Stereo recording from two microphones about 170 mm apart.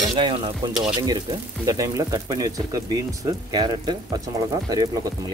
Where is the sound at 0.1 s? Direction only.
30° right (ahead or behind).